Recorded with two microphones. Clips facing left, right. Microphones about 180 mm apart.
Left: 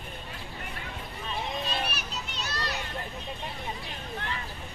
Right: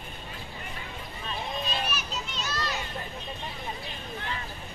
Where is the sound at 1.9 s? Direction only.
60° left (ahead or behind).